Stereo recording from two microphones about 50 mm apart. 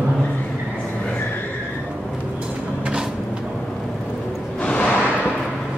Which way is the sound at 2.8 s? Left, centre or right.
Centre.